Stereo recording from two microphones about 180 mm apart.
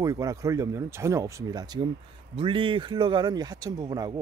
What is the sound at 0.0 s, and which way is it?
Speech, 20° right (ahead or behind).